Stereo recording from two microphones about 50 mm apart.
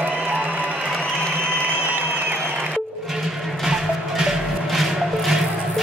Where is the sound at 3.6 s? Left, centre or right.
Centre.